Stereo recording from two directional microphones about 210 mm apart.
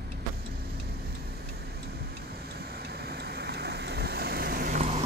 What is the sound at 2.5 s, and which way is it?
Vehicle, 50° right (ahead or behind).